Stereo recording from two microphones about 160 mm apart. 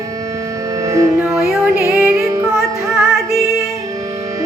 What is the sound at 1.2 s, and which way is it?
Music, 5° right (ahead or behind).